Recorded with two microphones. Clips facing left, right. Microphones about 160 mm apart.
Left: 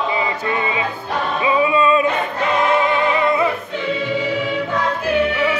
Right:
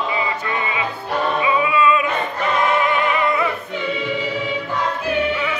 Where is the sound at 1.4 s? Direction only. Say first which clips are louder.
Left 4 dB; 30° left (ahead or behind).